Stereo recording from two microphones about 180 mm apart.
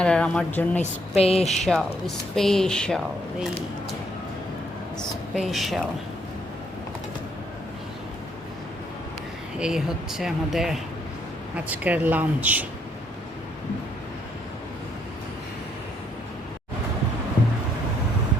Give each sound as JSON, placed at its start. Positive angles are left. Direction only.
{"t": 0.0, "sound": "speech", "side_deg": 5}
{"t": 0.8, "sound": "speech", "side_deg": 35}
{"t": 2.3, "sound": "speech", "side_deg": 0}
{"t": 4.9, "sound": "a woman's voice", "side_deg": 0}
{"t": 9.6, "sound": "speech", "side_deg": -5}